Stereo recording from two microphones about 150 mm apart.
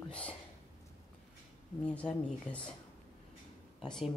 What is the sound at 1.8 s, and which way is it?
Speech, 10° left (ahead or behind).